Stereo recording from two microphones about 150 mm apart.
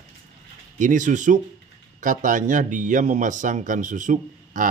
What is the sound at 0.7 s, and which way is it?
A man's voice, 60° right (ahead or behind).